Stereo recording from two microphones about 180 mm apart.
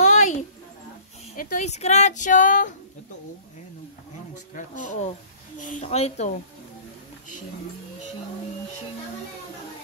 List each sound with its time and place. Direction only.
0.0 s a sound: 40° left (ahead or behind)
1.3 s speech: 50° left (ahead or behind)
4.6 s speech: 45° left (ahead or behind)